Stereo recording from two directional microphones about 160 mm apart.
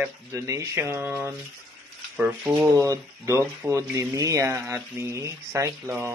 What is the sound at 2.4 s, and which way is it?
Speech, 20° right (ahead or behind).